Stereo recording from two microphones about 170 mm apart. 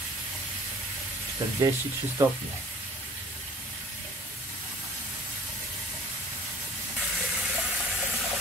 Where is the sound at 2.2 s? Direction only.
20° right (ahead or behind).